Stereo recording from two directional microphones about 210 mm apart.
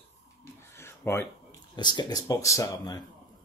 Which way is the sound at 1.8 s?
20° left (ahead or behind).